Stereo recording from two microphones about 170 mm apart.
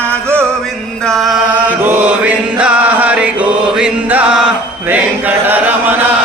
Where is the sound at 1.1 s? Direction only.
Centre (ahead or behind).